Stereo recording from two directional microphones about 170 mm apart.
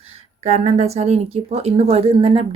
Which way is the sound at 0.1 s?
40° right (ahead or behind).